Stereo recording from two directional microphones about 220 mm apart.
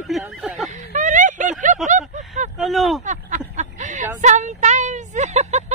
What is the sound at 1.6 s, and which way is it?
Snicker, 35° right (ahead or behind).